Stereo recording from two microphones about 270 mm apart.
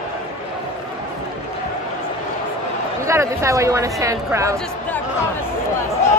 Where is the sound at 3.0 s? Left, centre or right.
Centre.